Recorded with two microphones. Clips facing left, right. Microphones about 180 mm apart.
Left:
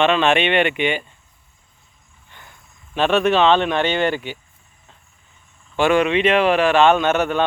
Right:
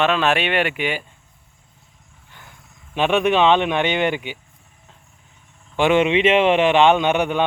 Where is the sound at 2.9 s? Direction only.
15° right (ahead or behind).